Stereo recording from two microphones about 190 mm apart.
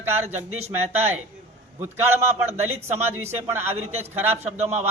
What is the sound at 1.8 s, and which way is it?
A man's voice, 10° right (ahead or behind).